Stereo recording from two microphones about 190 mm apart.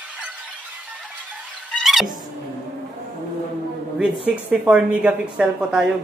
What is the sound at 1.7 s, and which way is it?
Squeal, centre (ahead or behind).